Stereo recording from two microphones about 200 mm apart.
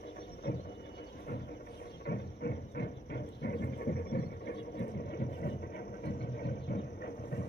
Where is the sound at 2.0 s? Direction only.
55° left (ahead or behind).